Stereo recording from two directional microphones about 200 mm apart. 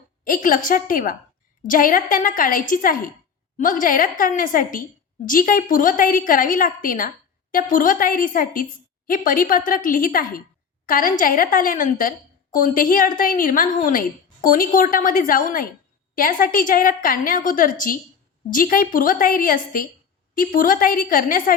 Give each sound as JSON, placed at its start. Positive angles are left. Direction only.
{"t": 0.3, "sound": "a woman's voice", "side_deg": 45}